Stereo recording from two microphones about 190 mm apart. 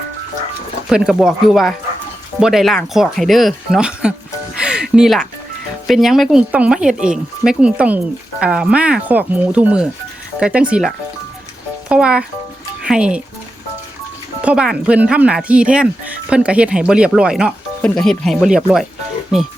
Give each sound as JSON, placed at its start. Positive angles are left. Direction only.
{"t": 0.9, "sound": "speech", "side_deg": -5}
{"t": 4.6, "sound": "music", "side_deg": -5}
{"t": 5.9, "sound": "speech", "side_deg": 0}
{"t": 14.4, "sound": "speech", "side_deg": -5}